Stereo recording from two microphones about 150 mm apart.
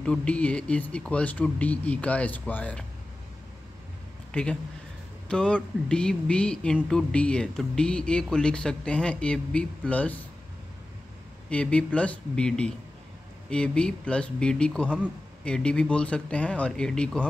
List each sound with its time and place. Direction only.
0.0 s speech: 5° left (ahead or behind)
4.3 s a man's voice: 5° left (ahead or behind)
11.5 s speech: 10° left (ahead or behind)